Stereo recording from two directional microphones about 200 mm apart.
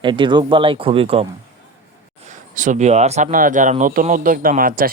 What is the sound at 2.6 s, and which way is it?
Speech, 40° right (ahead or behind).